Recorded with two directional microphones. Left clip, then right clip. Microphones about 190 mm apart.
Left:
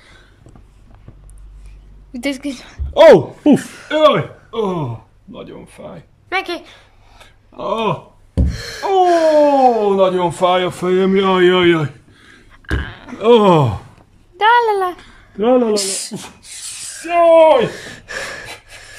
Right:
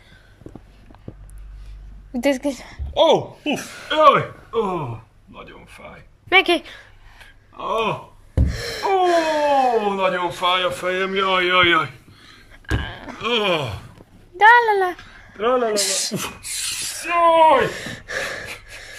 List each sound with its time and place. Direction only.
2.1 s a woman's voice: 5° left (ahead or behind)
2.9 s speech: 35° left (ahead or behind)
3.9 s speech: 20° left (ahead or behind)
6.2 s speech: 5° right (ahead or behind)
7.2 s a sound: 20° left (ahead or behind)
8.4 s a sound: 5° right (ahead or behind)
9.8 s a man's voice: 20° left (ahead or behind)
12.4 s a sound: centre (ahead or behind)
13.2 s a sound: 35° left (ahead or behind)
14.3 s speech: 5° left (ahead or behind)
15.3 s speech: 35° left (ahead or behind)
15.7 s speech: 5° left (ahead or behind)
17.3 s a woman's voice: 10° left (ahead or behind)
17.7 s gasp: centre (ahead or behind)